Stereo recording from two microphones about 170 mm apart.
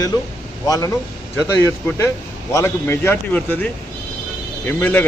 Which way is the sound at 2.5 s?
15° left (ahead or behind).